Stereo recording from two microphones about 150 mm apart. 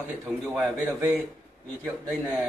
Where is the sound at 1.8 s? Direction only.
20° right (ahead or behind).